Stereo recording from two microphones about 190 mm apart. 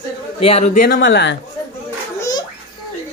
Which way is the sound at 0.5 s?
35° left (ahead or behind).